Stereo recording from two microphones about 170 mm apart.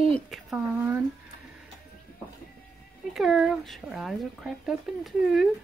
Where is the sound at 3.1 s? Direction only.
Centre (ahead or behind).